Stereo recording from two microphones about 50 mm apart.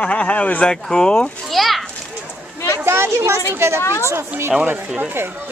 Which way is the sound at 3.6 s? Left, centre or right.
Right.